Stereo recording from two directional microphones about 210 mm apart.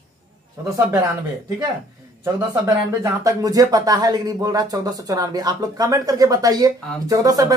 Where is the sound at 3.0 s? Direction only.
15° right (ahead or behind).